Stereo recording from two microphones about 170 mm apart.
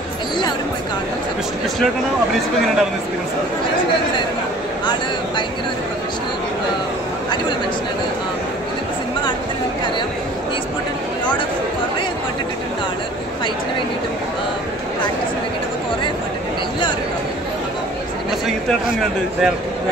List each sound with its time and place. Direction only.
18.7 s speech: centre (ahead or behind)